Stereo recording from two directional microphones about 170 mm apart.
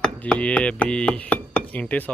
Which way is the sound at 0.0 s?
5° left (ahead or behind).